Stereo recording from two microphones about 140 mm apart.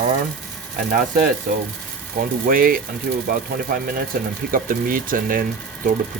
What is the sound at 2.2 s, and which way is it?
Speech, 90° right.